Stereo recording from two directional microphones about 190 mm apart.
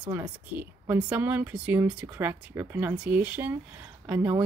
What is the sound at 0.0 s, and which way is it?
Speech, 10° right (ahead or behind).